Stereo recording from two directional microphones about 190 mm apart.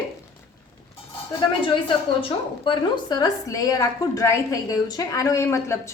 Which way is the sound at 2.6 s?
20° left (ahead or behind).